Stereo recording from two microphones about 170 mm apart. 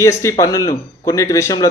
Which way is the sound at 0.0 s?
15° left (ahead or behind).